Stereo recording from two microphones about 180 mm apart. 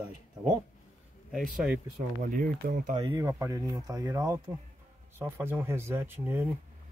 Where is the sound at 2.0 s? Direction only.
50° right (ahead or behind).